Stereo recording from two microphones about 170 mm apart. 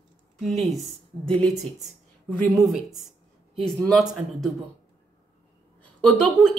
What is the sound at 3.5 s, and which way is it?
Speech, centre (ahead or behind).